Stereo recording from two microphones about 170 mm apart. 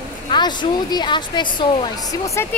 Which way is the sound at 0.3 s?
25° left (ahead or behind).